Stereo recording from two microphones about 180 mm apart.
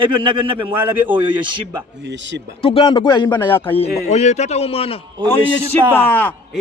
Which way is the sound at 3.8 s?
40° left (ahead or behind).